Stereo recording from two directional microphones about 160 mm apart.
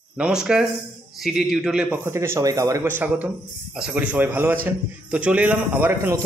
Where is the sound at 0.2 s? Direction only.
5° right (ahead or behind).